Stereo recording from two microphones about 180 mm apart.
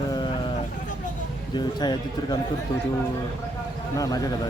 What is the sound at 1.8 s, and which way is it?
Speech, 25° left (ahead or behind).